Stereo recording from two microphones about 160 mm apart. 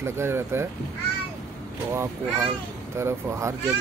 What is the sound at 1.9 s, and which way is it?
Speech, 15° right (ahead or behind).